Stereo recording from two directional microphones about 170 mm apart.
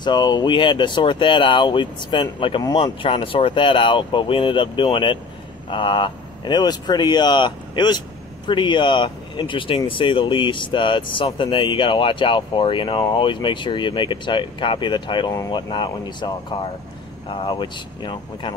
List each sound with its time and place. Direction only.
0.0 s speech: 25° left (ahead or behind)